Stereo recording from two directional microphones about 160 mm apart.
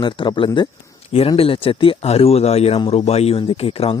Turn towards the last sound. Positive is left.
turn(degrees=40)  # may be behind; listen again after turning